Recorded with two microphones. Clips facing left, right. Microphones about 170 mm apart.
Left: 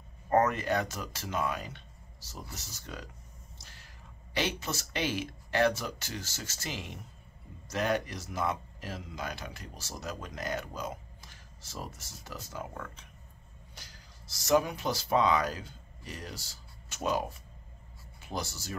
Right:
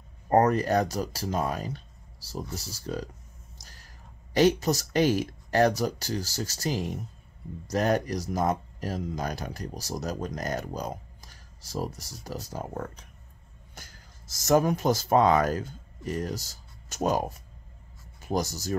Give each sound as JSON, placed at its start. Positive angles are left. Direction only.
{"t": 0.3, "sound": "speech", "side_deg": -35}